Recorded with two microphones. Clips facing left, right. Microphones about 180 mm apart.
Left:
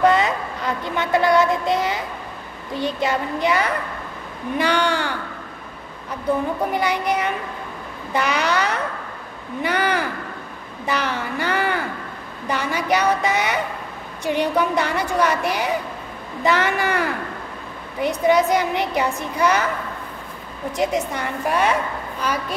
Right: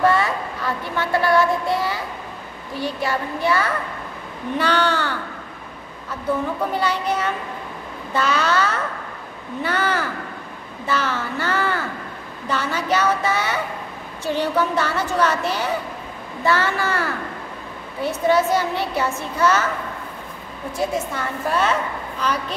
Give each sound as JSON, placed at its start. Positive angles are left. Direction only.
{"t": 0.0, "sound": "a woman's voice", "side_deg": 20}
{"t": 6.7, "sound": "a woman's voice", "side_deg": 15}
{"t": 20.7, "sound": "a woman's voice", "side_deg": 20}